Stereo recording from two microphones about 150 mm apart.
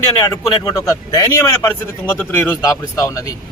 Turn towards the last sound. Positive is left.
turn(degrees=20)  # may be behind; listen again after turning